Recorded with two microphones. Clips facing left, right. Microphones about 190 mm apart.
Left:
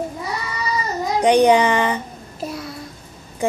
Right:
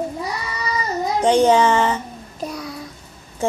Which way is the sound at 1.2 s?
15° left (ahead or behind).